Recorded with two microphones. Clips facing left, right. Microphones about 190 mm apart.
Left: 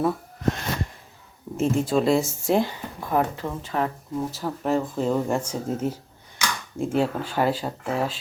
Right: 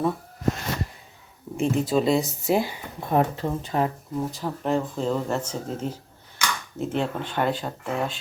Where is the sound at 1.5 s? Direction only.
Centre (ahead or behind).